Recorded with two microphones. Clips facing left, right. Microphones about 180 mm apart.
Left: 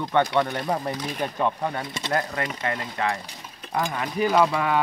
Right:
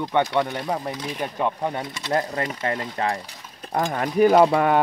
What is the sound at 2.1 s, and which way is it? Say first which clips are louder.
Speech: right 3 dB; 30° right (ahead or behind).